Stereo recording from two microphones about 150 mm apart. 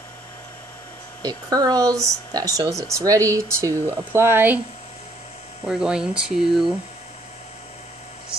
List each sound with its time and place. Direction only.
1.2 s speech: 25° right (ahead or behind)
5.7 s speech: 5° right (ahead or behind)